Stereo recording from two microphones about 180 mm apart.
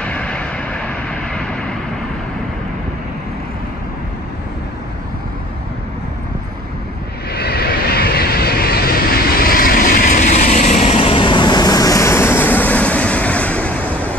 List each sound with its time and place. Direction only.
0.0 s vehicle: 5° left (ahead or behind)
7.3 s vehicle: 60° left (ahead or behind); by 14.1 s 10° left (ahead or behind)